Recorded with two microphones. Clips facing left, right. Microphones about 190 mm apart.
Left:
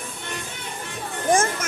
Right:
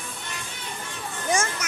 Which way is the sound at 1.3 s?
50° left (ahead or behind).